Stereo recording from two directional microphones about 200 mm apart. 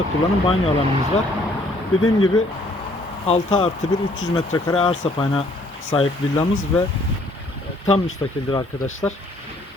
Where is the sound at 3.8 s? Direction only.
20° left (ahead or behind).